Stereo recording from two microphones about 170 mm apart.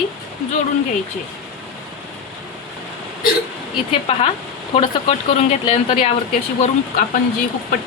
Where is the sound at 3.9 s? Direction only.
35° left (ahead or behind).